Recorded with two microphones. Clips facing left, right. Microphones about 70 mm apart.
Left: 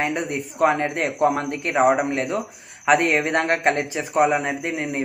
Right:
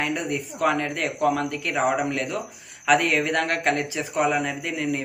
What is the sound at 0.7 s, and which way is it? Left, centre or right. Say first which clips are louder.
A man's voice: left 4 dB; left.